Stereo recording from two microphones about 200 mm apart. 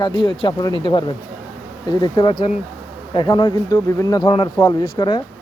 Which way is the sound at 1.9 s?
20° left (ahead or behind).